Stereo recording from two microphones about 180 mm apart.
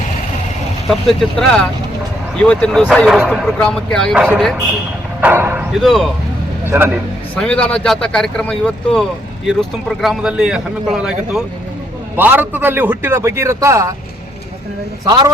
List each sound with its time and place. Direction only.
0.9 s a man's voice: centre (ahead or behind)
5.2 s speech: 10° right (ahead or behind)
5.8 s a man's voice: centre (ahead or behind)
6.7 s a man's voice: 10° right (ahead or behind)
7.3 s a man's voice: 5° left (ahead or behind); by 13.9 s 15° right (ahead or behind)
15.0 s speech: 20° right (ahead or behind)